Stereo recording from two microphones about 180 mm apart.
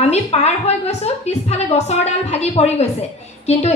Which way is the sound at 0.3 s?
35° left (ahead or behind).